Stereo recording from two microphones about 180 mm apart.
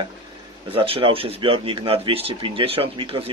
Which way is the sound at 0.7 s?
30° right (ahead or behind).